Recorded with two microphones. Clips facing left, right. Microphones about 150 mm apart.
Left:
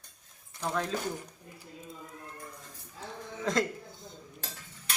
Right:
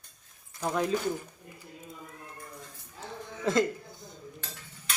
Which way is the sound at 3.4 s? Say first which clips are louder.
Right 4 dB; centre (ahead or behind).